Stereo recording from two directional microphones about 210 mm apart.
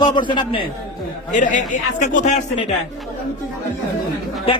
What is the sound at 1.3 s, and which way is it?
A man's voice, 35° left (ahead or behind).